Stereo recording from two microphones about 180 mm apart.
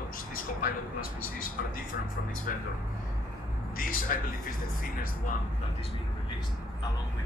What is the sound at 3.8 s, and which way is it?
Speech, 50° left (ahead or behind).